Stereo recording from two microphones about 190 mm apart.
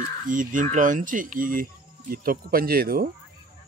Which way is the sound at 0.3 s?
45° right (ahead or behind).